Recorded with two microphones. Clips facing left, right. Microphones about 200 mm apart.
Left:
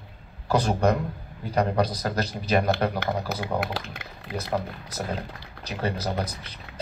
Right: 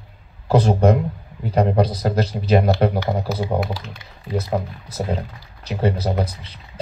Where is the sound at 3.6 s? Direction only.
60° left (ahead or behind).